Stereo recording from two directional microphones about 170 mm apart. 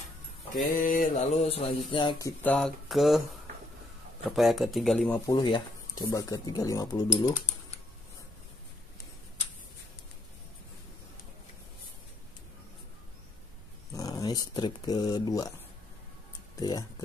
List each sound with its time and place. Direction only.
0.6 s speech: 55° left (ahead or behind); by 2.3 s 25° left (ahead or behind)
2.4 s speech: centre (ahead or behind)
5.1 s speech: 20° left (ahead or behind)
13.9 s speech: 20° left (ahead or behind)
16.5 s speech: 20° left (ahead or behind)